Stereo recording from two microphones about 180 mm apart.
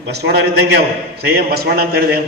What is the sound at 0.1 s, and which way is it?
A man's voice, 65° right (ahead or behind).